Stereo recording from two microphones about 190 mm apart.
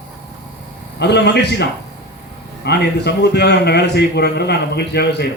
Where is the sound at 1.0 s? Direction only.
60° left (ahead or behind).